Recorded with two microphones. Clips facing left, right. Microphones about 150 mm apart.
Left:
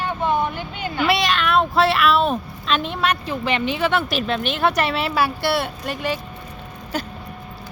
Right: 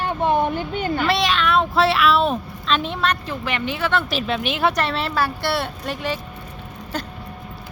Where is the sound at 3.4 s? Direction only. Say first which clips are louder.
Left 5 dB; 20° left (ahead or behind).